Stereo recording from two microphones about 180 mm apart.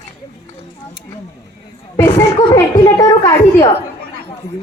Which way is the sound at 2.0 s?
15° left (ahead or behind).